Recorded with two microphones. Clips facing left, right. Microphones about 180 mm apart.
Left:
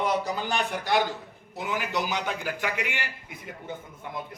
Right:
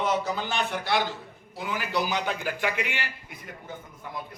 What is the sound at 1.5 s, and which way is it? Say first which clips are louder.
A man's voice: even; 20° left (ahead or behind).